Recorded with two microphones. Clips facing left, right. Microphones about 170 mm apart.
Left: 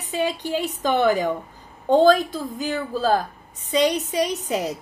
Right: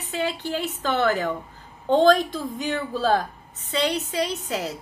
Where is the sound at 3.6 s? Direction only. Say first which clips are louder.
Left 4 dB; 15° left (ahead or behind).